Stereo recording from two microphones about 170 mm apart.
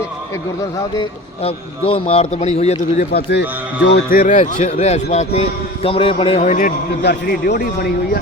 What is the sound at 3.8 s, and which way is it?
A man's voice, 65° left (ahead or behind).